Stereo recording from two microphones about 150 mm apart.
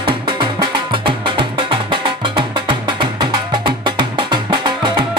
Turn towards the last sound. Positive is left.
turn(degrees=-30)  # may be behind; listen again after turning